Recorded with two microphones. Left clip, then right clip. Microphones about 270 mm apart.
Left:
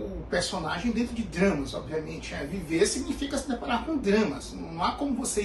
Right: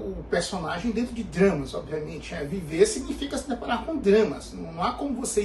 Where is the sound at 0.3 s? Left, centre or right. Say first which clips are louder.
Right 1 dB; centre.